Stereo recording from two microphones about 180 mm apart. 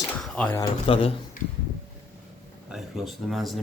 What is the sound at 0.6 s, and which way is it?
Speech, 30° left (ahead or behind).